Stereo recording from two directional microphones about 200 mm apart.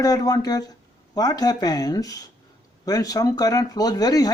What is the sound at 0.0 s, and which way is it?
Speech, 20° left (ahead or behind).